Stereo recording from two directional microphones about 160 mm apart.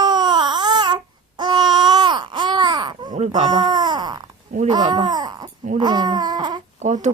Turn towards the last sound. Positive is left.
turn(degrees=-45)  # may be behind; listen again after turning